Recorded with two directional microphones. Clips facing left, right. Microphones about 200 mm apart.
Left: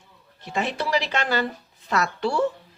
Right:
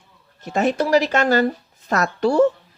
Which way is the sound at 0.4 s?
45° right (ahead or behind).